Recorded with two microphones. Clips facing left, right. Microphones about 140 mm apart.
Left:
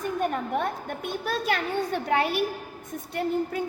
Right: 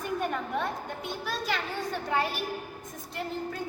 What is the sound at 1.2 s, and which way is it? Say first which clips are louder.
A child's voice: left 5 dB; 55° left (ahead or behind).